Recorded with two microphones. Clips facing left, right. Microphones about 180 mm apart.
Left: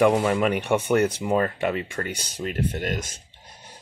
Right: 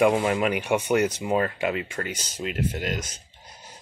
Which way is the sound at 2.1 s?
60° left (ahead or behind).